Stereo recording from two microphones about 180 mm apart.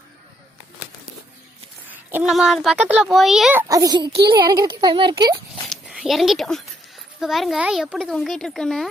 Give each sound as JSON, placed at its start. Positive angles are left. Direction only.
{"t": 2.0, "sound": "a woman's voice", "side_deg": -10}
{"t": 2.3, "sound": "a child's voice", "side_deg": 0}
{"t": 5.6, "sound": "a sound", "side_deg": 0}
{"t": 7.2, "sound": "a child's voice", "side_deg": 0}